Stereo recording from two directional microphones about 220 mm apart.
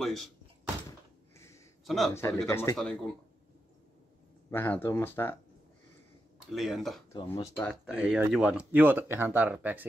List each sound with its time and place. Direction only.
0.0 s speech: centre (ahead or behind)
1.9 s speech: centre (ahead or behind)
2.4 s speech: 15° left (ahead or behind)
2.8 s speech: 5° left (ahead or behind)
4.5 s speech: 10° left (ahead or behind)
6.5 s speech: centre (ahead or behind)
7.1 s speech: 20° left (ahead or behind)
7.5 s speech: centre (ahead or behind)